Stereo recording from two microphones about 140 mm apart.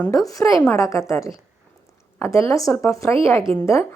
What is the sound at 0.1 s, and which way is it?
Speech, 25° left (ahead or behind).